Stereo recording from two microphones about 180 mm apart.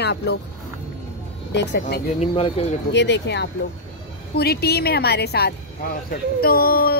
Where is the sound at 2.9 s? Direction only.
75° left (ahead or behind).